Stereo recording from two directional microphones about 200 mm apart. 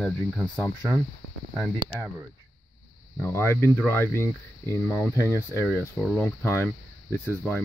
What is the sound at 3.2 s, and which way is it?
Speech, 10° left (ahead or behind).